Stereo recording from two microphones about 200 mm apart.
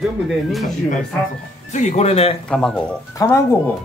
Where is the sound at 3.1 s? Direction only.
15° left (ahead or behind).